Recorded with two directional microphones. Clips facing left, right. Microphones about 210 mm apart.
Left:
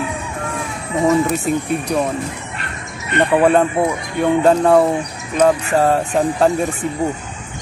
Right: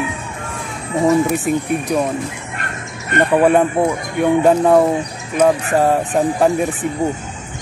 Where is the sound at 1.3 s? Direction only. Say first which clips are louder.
Right 1 dB; 15° right (ahead or behind).